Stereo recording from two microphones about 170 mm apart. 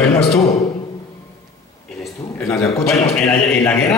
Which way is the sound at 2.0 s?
10° left (ahead or behind).